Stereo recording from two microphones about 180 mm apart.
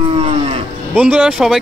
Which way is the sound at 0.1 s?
35° right (ahead or behind).